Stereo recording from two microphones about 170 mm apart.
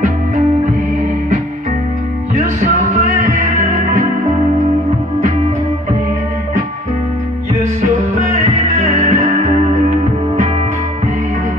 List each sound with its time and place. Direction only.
2.6 s music: 50° right (ahead or behind)
8.3 s music: 45° right (ahead or behind)